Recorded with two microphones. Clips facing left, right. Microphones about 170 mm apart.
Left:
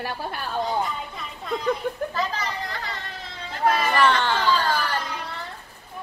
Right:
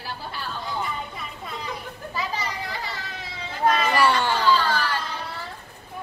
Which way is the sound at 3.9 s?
10° right (ahead or behind).